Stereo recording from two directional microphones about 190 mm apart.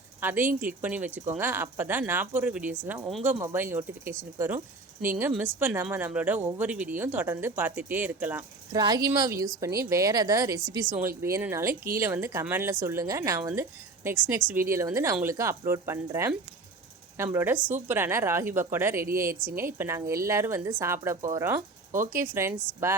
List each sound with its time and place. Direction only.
0.2 s speech: 10° right (ahead or behind)
8.8 s speech: 20° right (ahead or behind)